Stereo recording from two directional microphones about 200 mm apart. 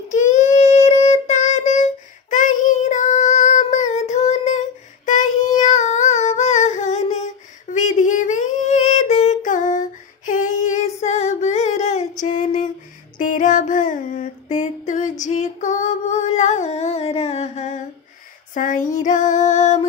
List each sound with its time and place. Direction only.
0.1 s child singing: 35° left (ahead or behind)
7.7 s female singing: 35° left (ahead or behind)
13.2 s a sound: 40° left (ahead or behind)
18.5 s female singing: 40° left (ahead or behind)